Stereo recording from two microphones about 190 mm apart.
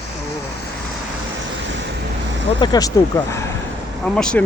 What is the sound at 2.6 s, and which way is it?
Speech, 20° left (ahead or behind).